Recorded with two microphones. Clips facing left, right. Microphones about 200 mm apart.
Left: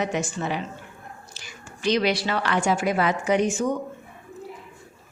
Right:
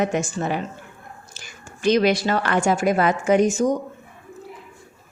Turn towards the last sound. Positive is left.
turn(degrees=-40)  # may be behind; listen again after turning